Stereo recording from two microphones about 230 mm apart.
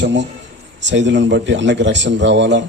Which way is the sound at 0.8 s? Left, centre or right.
Right.